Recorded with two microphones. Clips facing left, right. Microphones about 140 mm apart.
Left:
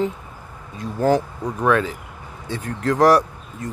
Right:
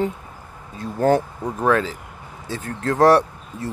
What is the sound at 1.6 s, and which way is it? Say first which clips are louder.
Speech: even; 30° right (ahead or behind).